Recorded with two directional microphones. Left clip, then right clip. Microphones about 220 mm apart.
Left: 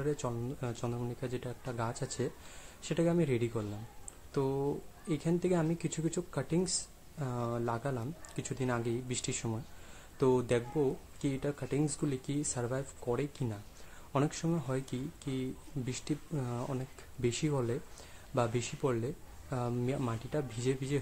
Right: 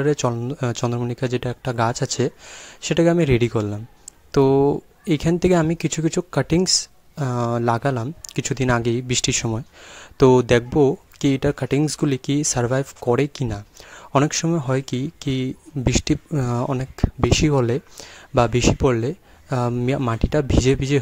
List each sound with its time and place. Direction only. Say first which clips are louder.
0.0 s speech: right 15 dB; 40° right (ahead or behind)